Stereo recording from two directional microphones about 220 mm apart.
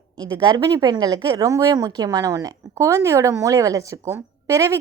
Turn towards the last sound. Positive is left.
turn(degrees=-15)  # may be behind; listen again after turning